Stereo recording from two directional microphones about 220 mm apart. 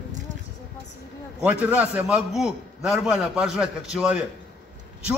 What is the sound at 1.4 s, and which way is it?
A man's voice, 5° right (ahead or behind).